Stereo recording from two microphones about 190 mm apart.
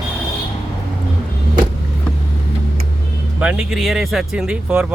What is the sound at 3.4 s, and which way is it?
Speech, 5° right (ahead or behind).